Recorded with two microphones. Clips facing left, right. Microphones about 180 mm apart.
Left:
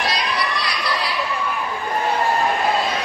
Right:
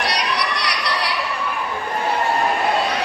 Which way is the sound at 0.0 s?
70° right (ahead or behind).